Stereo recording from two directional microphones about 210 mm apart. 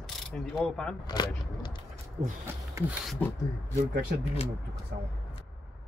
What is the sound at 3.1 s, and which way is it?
Speech, 10° left (ahead or behind).